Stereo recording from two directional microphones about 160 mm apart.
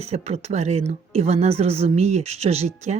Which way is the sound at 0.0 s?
40° right (ahead or behind).